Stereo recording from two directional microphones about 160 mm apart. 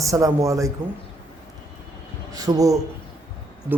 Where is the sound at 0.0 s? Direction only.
20° right (ahead or behind).